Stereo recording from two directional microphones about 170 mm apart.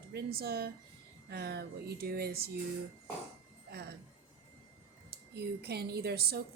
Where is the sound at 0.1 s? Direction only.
65° right (ahead or behind).